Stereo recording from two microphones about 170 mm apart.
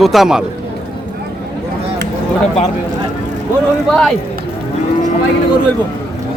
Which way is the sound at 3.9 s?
5° left (ahead or behind).